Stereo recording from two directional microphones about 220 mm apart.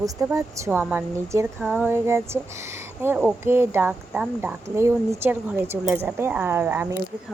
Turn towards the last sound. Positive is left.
turn(degrees=-10)  # may be behind; listen again after turning